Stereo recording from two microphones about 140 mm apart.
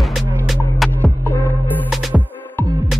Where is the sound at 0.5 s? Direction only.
Centre (ahead or behind).